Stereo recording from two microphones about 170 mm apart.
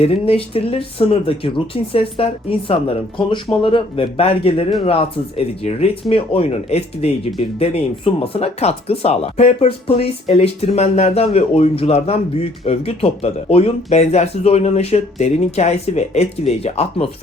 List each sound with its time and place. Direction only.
0.0 s speech: 35° left (ahead or behind)